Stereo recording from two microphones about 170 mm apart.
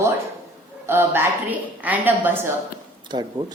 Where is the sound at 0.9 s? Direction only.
15° right (ahead or behind).